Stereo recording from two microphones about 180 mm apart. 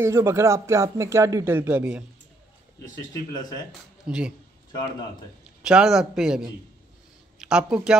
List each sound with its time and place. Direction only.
0.0 s speech: 15° right (ahead or behind)
3.3 s speech: 20° left (ahead or behind)
4.1 s a man's voice: 5° right (ahead or behind)
5.6 s a man's voice: 5° right (ahead or behind)